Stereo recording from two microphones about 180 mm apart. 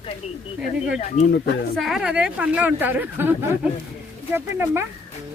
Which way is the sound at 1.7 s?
Centre (ahead or behind).